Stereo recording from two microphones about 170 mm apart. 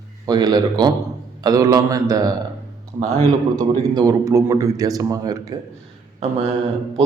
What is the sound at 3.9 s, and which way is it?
Speech, 20° right (ahead or behind).